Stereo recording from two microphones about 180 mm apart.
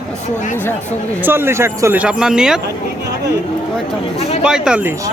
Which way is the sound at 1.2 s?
15° right (ahead or behind).